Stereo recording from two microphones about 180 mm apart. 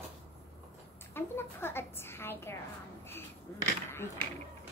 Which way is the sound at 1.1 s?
10° left (ahead or behind).